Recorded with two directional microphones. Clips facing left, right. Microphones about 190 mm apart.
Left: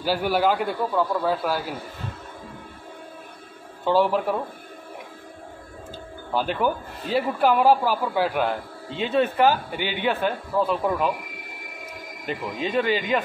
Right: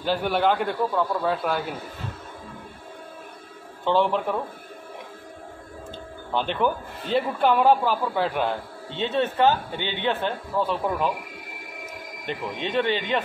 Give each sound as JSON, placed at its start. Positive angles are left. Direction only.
{"t": 0.0, "sound": "a man's voice", "side_deg": 5}
{"t": 3.8, "sound": "speech", "side_deg": 5}
{"t": 6.3, "sound": "speech", "side_deg": 5}
{"t": 8.9, "sound": "speech", "side_deg": -25}
{"t": 9.7, "sound": "speech", "side_deg": 10}
{"t": 12.3, "sound": "a man's voice", "side_deg": 5}